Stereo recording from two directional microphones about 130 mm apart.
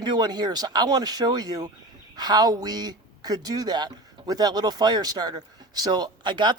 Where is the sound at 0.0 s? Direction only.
35° right (ahead or behind).